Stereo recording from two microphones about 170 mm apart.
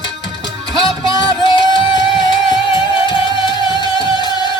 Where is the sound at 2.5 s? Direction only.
30° left (ahead or behind).